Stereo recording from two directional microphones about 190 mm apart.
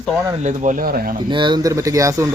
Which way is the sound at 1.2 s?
25° right (ahead or behind).